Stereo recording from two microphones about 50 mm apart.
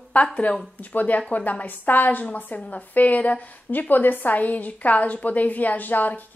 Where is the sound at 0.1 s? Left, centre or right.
Left.